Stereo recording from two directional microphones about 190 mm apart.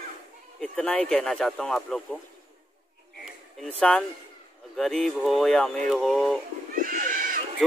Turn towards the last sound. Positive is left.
turn(degrees=-45)  # may be behind; listen again after turning